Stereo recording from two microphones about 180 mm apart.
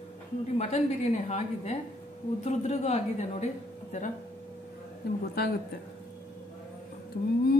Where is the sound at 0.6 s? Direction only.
40° left (ahead or behind).